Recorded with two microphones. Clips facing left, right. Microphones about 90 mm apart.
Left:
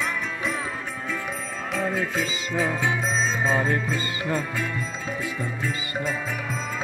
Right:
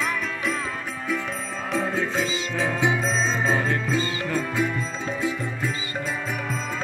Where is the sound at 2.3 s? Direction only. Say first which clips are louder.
Even; 5° left (ahead or behind).